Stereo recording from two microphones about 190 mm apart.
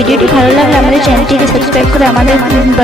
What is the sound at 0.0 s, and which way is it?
Speech, centre (ahead or behind).